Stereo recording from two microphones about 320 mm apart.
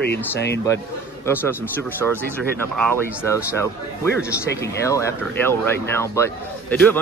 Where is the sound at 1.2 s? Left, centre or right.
Centre.